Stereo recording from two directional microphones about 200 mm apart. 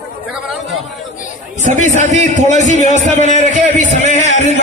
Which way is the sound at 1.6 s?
35° right (ahead or behind).